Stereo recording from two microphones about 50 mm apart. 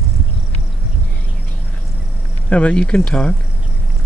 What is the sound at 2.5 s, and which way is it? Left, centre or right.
Speech, left.